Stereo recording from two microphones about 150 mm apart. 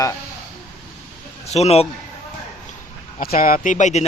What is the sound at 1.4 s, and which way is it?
Speech, 45° left (ahead or behind).